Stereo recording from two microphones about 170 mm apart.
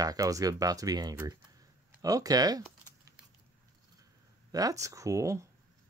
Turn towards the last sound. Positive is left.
turn(degrees=-20)  # may be behind; listen again after turning